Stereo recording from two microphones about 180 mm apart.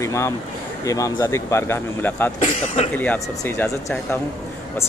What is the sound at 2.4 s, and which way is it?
Speech, 30° left (ahead or behind).